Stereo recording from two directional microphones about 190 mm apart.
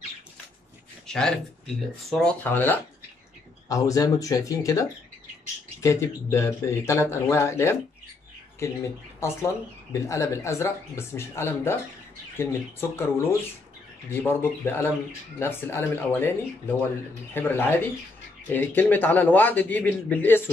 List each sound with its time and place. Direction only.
1.0 s a sound: 5° left (ahead or behind)
2.0 s speech: 5° left (ahead or behind)
12.9 s speech: 15° left (ahead or behind)